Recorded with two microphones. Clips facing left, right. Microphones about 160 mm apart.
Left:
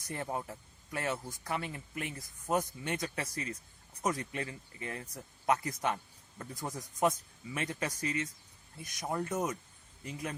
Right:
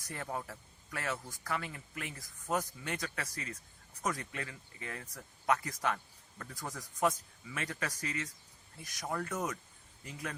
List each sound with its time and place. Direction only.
0.1 s speech: 25° left (ahead or behind)